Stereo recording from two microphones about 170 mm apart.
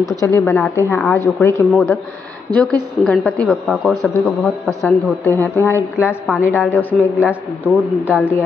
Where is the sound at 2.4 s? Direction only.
25° right (ahead or behind).